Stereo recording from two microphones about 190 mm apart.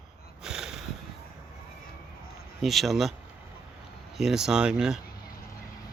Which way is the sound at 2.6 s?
Centre (ahead or behind).